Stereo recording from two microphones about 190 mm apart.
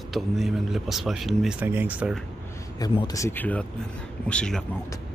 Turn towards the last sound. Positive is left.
turn(degrees=5)  # may be behind; listen again after turning